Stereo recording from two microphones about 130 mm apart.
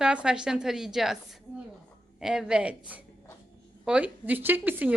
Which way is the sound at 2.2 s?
5° right (ahead or behind).